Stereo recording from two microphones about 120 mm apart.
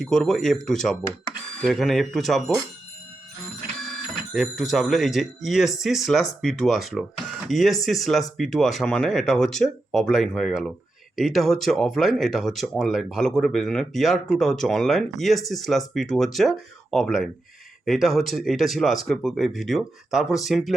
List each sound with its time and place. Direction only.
0.0 s speech: 5° left (ahead or behind)
4.4 s speech: centre (ahead or behind)